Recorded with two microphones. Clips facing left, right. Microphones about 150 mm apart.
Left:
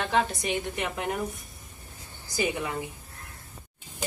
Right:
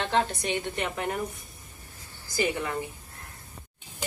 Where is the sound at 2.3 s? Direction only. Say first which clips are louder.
Right 1 dB; 15° left (ahead or behind).